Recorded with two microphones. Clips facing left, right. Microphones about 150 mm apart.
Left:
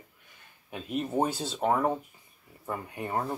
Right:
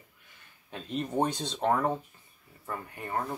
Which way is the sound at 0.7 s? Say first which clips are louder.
Left 1 dB; 10° left (ahead or behind).